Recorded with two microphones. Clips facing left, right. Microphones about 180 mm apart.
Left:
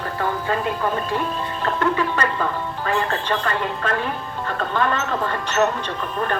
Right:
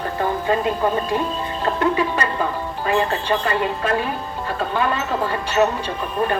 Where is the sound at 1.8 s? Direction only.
15° right (ahead or behind).